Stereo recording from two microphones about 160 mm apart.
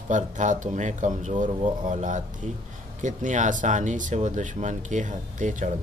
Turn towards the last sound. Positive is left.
turn(degrees=-55)  # may be behind; listen again after turning